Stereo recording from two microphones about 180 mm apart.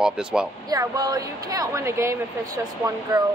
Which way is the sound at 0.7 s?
20° right (ahead or behind).